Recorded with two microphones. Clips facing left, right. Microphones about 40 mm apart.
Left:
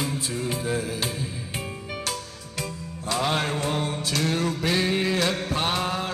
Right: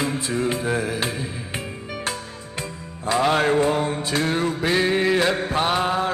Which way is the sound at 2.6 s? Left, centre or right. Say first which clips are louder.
Even; right.